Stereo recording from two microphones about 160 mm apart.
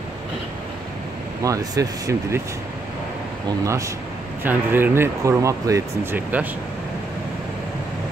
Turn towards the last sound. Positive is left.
turn(degrees=-10)  # may be behind; listen again after turning